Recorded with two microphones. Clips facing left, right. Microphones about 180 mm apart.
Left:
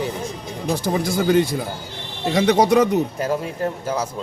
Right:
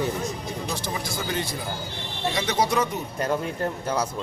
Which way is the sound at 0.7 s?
50° left (ahead or behind).